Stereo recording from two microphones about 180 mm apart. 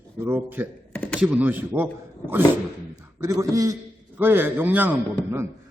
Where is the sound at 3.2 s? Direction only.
15° right (ahead or behind).